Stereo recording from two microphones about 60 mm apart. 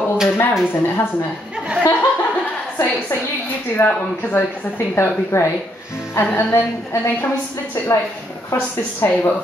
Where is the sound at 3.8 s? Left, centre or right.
Left.